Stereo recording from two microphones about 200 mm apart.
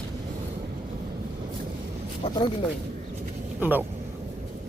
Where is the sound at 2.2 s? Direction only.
30° left (ahead or behind).